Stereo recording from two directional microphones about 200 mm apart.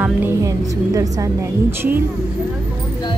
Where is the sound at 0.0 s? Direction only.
15° right (ahead or behind).